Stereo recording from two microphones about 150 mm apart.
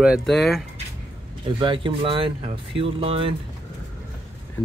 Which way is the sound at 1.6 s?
35° right (ahead or behind).